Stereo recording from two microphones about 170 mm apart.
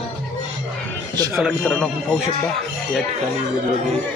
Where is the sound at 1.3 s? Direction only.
Centre (ahead or behind).